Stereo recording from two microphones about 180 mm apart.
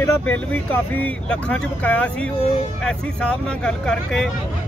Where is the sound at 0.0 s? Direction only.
10° left (ahead or behind).